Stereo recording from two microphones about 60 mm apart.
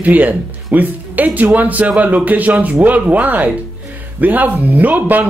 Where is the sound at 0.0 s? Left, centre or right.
Right.